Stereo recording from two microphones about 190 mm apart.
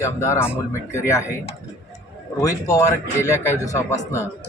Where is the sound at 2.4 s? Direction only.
15° left (ahead or behind).